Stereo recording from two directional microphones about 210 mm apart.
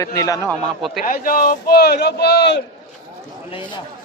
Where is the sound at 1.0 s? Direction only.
40° left (ahead or behind).